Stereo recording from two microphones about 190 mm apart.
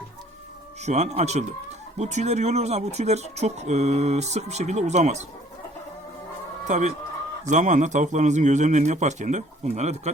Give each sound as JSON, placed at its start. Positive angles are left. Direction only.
{"t": 0.9, "sound": "speech", "side_deg": -35}
{"t": 6.7, "sound": "speech", "side_deg": -40}